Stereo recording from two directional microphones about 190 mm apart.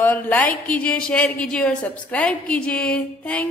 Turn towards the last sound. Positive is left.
turn(degrees=5)  # may be behind; listen again after turning